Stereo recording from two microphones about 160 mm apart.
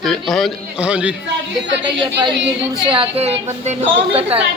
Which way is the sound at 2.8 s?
30° right (ahead or behind).